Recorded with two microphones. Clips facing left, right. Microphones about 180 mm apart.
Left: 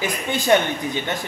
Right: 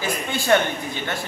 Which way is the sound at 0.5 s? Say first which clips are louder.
Left 1 dB; 15° left (ahead or behind).